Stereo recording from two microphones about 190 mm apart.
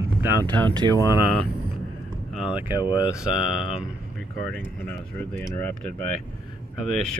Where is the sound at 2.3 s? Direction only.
5° right (ahead or behind).